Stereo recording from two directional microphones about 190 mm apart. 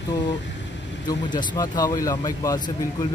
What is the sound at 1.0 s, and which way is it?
A man's voice, 20° left (ahead or behind).